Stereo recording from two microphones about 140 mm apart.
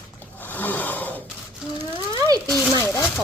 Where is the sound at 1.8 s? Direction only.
25° right (ahead or behind).